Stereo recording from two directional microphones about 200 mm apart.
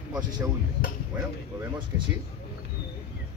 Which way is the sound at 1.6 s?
25° right (ahead or behind).